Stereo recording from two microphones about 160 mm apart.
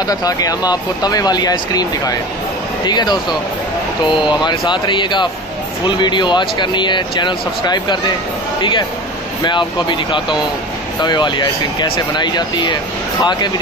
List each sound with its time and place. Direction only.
0.0 s speech: 25° left (ahead or behind)